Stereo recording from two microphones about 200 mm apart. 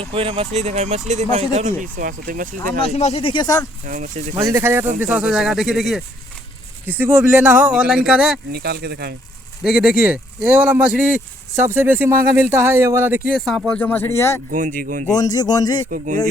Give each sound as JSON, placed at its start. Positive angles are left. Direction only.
{"t": 0.0, "sound": "speech", "side_deg": -30}
{"t": 2.8, "sound": "speech", "side_deg": 30}
{"t": 3.8, "sound": "speech", "side_deg": -40}
{"t": 4.4, "sound": "speech", "side_deg": -15}
{"t": 8.5, "sound": "speech", "side_deg": -55}
{"t": 9.6, "sound": "speech", "side_deg": -5}
{"t": 13.4, "sound": "speech", "side_deg": 0}
{"t": 14.5, "sound": "speech", "side_deg": -40}
{"t": 15.1, "sound": "speech", "side_deg": 20}